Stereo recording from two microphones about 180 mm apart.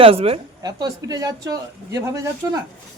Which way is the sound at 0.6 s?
20° right (ahead or behind).